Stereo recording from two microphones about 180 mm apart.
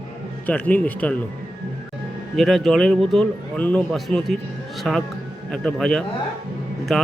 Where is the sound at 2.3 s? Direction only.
Centre (ahead or behind).